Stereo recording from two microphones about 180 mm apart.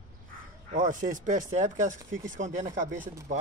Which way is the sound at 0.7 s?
45° right (ahead or behind).